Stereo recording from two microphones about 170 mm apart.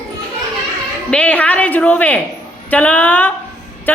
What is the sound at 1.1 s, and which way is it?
A man's voice, 5° left (ahead or behind).